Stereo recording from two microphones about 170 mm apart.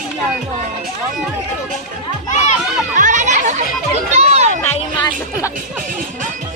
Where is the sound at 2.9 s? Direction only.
50° right (ahead or behind).